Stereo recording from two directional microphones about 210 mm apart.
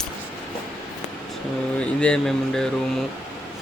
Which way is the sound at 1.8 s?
5° left (ahead or behind).